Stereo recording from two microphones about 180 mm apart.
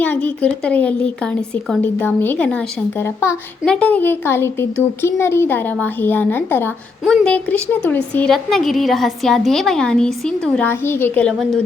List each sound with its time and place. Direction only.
0.0 s speech: 10° left (ahead or behind)